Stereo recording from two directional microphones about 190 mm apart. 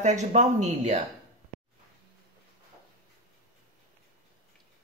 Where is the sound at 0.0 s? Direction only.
35° right (ahead or behind).